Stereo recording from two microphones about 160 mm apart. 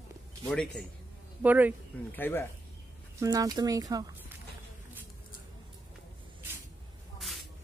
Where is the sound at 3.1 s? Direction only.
20° right (ahead or behind).